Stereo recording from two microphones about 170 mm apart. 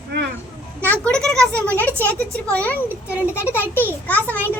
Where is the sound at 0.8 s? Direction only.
10° left (ahead or behind).